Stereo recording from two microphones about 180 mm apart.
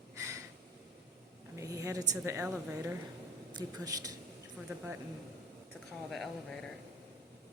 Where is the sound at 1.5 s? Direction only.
15° right (ahead or behind).